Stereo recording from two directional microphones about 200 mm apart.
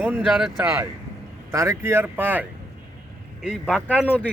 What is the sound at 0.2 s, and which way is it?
Speech, centre (ahead or behind).